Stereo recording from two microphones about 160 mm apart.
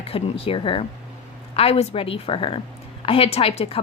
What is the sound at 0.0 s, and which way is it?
A woman's voice, 35° left (ahead or behind).